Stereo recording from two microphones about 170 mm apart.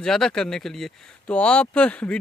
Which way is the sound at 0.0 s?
5° left (ahead or behind).